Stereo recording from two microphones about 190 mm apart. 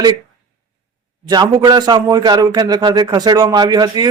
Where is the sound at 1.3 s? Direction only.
20° right (ahead or behind).